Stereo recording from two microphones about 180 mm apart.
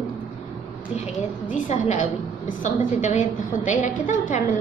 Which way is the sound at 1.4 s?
45° left (ahead or behind).